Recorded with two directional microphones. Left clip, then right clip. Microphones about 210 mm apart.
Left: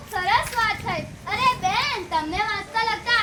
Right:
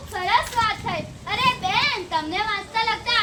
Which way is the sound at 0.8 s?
5° right (ahead or behind).